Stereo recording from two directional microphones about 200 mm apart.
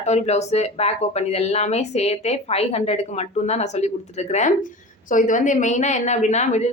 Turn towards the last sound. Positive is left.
turn(degrees=35)  # may be behind; listen again after turning